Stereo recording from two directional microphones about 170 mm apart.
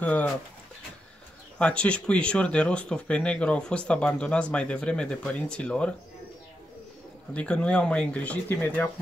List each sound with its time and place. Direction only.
0.0 s speech: 10° left (ahead or behind)
1.6 s speech: 5° left (ahead or behind)
7.3 s speech: 5° left (ahead or behind)